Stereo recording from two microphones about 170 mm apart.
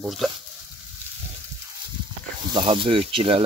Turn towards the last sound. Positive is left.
turn(degrees=-35)  # may be behind; listen again after turning